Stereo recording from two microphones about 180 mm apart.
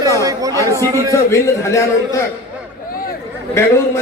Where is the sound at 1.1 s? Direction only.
15° left (ahead or behind).